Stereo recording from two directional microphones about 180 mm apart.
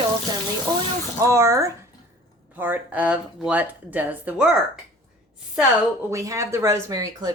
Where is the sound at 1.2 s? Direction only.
15° right (ahead or behind).